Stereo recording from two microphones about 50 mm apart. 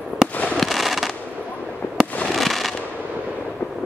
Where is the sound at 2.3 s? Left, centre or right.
Centre.